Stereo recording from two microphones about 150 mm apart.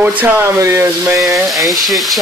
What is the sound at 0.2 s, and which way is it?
Speech, 10° right (ahead or behind).